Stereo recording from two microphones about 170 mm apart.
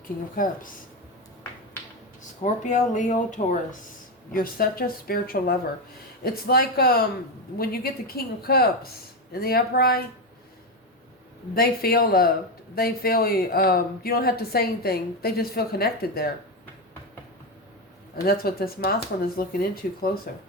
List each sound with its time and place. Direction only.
0.4 s speech: 50° left (ahead or behind)
2.4 s speech: 45° left (ahead or behind); by 10.0 s 65° left (ahead or behind)
11.5 s speech: 65° left (ahead or behind)
18.3 s speech: 65° left (ahead or behind)